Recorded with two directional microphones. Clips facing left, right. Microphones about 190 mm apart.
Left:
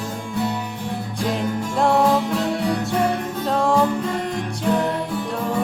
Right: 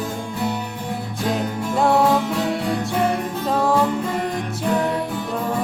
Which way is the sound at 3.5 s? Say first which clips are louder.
Even; 5° right (ahead or behind).